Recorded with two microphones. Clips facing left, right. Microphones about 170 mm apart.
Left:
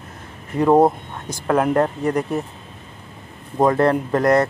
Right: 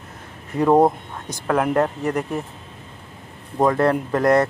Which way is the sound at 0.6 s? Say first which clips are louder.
Left 1 dB; 5° left (ahead or behind).